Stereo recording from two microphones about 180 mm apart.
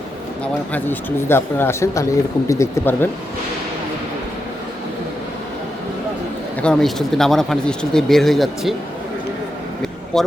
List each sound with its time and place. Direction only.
0.4 s speech: 10° left (ahead or behind)
6.6 s speech: 5° left (ahead or behind)
10.1 s speech: 5° left (ahead or behind)